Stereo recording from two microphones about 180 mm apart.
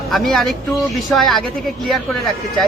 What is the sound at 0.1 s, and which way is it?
A woman's voice, centre (ahead or behind).